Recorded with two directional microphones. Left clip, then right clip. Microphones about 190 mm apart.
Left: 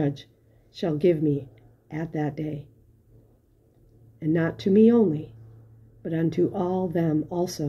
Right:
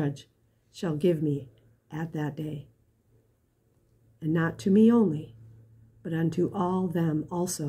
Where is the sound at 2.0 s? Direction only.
20° right (ahead or behind).